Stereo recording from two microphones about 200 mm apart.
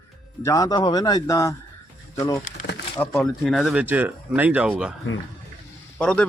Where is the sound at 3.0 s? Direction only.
5° left (ahead or behind).